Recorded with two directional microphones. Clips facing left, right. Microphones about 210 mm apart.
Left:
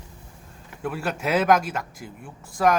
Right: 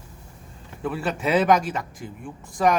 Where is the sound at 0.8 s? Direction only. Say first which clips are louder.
Right 2 dB; centre (ahead or behind).